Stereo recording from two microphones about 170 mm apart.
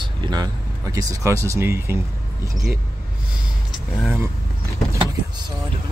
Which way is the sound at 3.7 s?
10° right (ahead or behind).